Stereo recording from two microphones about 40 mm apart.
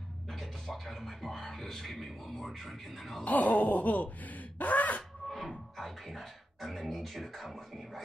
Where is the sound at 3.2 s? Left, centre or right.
Left.